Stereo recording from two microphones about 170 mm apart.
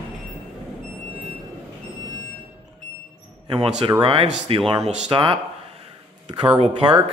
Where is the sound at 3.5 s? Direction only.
30° right (ahead or behind).